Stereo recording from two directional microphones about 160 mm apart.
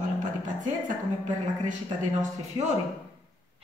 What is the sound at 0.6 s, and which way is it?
A woman's voice, 50° right (ahead or behind).